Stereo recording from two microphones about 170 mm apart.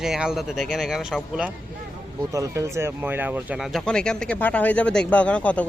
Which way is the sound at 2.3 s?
20° right (ahead or behind).